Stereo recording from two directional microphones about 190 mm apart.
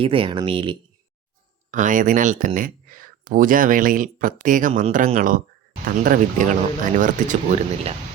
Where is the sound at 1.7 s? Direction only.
45° right (ahead or behind).